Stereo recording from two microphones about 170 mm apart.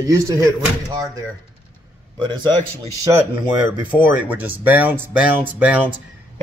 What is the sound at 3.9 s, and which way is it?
Speech, 10° right (ahead or behind).